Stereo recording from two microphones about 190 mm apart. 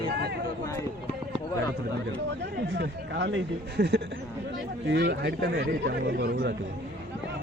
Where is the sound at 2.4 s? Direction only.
65° right (ahead or behind).